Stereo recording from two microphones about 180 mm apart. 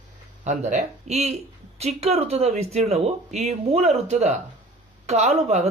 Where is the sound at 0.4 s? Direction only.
40° right (ahead or behind).